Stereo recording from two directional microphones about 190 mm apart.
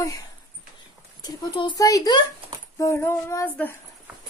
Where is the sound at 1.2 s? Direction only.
20° left (ahead or behind).